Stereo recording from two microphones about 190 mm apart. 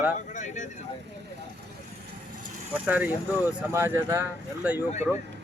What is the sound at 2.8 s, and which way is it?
Speech, 10° right (ahead or behind).